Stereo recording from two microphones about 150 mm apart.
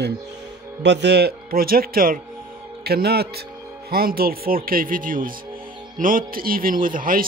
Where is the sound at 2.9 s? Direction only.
90° right.